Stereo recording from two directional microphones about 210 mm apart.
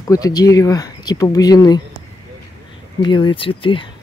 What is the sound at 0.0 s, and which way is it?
Speech, 15° left (ahead or behind).